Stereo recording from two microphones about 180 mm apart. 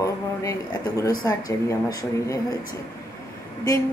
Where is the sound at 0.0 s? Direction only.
15° left (ahead or behind).